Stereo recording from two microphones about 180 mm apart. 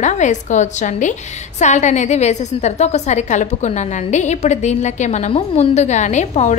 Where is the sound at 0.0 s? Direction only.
40° left (ahead or behind).